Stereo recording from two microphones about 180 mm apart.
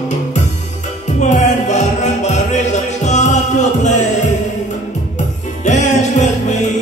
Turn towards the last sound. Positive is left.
turn(degrees=40)  # may be behind; listen again after turning